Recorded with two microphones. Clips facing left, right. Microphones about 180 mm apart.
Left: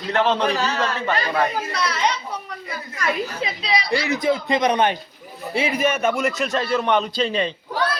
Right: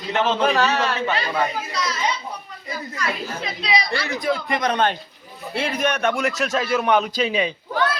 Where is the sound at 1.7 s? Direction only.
60° left (ahead or behind).